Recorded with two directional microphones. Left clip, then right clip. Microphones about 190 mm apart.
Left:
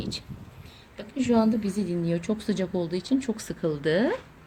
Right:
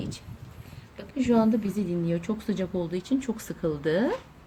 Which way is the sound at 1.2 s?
10° left (ahead or behind).